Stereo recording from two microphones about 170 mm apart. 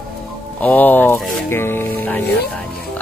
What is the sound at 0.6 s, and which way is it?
Speech, 10° left (ahead or behind).